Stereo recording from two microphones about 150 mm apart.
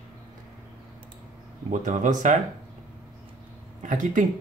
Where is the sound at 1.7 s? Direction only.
55° right (ahead or behind).